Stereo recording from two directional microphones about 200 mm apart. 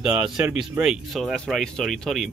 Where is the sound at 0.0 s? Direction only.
5° right (ahead or behind).